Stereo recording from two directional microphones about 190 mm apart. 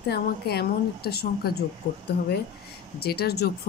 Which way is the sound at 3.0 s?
55° left (ahead or behind).